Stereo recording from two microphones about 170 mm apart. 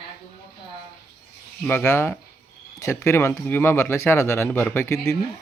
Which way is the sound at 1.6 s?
15° left (ahead or behind).